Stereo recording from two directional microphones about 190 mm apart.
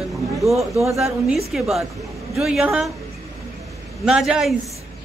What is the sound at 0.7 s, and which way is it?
Speech, 15° right (ahead or behind).